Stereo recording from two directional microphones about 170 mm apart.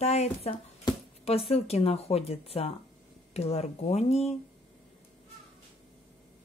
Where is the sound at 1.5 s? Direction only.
35° left (ahead or behind).